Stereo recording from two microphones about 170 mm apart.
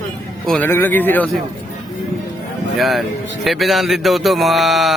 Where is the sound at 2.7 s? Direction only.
Centre (ahead or behind).